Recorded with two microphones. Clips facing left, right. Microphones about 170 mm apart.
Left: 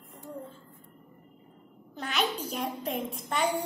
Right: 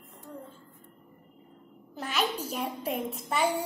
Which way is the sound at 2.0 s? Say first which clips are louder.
Even; 5° right (ahead or behind).